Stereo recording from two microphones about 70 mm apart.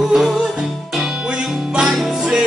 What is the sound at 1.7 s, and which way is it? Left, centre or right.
Music, centre.